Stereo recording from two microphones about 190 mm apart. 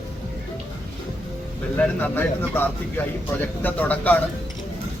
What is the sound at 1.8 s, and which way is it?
Speech, 10° left (ahead or behind).